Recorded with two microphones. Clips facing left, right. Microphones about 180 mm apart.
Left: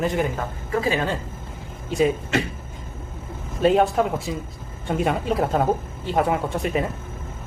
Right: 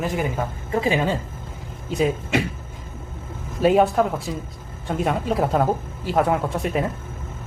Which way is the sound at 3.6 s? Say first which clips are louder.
Right 1 dB; 5° right (ahead or behind).